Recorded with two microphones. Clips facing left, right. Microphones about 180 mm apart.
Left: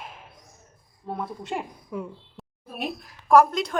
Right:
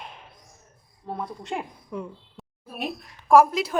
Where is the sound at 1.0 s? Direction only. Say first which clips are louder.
Left 1 dB; centre (ahead or behind).